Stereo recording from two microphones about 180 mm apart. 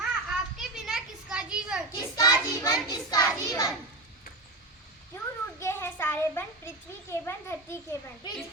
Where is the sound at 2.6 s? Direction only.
20° left (ahead or behind).